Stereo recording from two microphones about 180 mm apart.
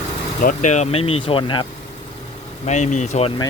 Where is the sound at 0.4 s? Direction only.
40° left (ahead or behind); by 1.6 s 25° left (ahead or behind).